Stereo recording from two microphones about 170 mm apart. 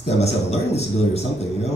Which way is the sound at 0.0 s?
40° left (ahead or behind).